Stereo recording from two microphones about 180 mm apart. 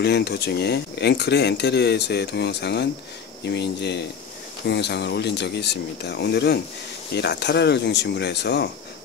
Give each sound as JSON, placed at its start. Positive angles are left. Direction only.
{"t": 0.0, "sound": "speech", "side_deg": 65}